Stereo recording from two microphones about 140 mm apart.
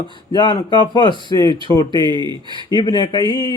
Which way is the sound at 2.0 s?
35° right (ahead or behind).